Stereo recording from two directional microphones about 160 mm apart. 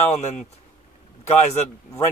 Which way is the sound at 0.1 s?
45° left (ahead or behind).